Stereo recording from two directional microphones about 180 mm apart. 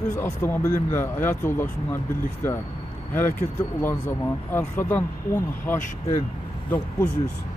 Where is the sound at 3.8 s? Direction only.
15° left (ahead or behind).